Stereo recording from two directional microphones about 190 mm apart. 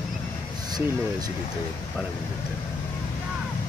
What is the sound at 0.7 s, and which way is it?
Speech, 20° right (ahead or behind).